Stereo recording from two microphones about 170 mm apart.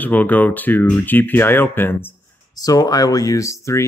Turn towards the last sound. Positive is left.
turn(degrees=20)  # may be behind; listen again after turning